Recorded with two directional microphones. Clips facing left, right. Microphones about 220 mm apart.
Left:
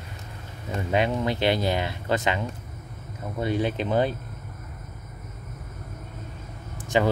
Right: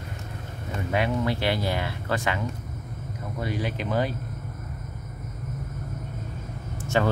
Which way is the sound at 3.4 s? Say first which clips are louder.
Left 5 dB; 25° left (ahead or behind).